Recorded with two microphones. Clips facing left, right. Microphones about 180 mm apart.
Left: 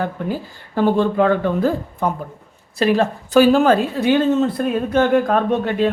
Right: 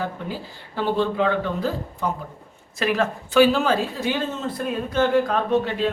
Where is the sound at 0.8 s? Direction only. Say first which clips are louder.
Left 6 dB; 50° left (ahead or behind).